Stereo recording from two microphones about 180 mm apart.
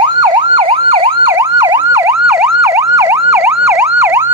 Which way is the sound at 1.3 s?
15° right (ahead or behind).